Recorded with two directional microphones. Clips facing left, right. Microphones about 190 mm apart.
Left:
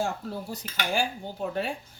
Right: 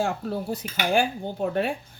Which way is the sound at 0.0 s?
65° right (ahead or behind).